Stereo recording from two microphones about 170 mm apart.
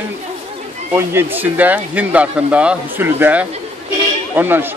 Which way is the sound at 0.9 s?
15° right (ahead or behind).